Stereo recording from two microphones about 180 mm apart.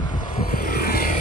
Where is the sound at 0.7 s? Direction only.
55° left (ahead or behind).